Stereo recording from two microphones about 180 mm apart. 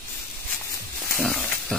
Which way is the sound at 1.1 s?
10° left (ahead or behind).